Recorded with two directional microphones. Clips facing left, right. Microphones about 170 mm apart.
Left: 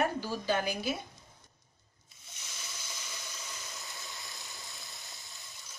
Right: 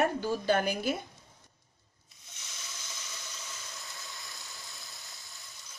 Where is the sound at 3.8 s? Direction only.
Centre (ahead or behind).